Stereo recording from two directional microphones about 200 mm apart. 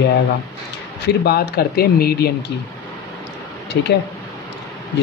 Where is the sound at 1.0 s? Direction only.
55° left (ahead or behind).